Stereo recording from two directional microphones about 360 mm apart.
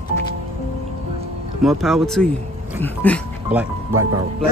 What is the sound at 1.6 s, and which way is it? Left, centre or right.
Speech, centre.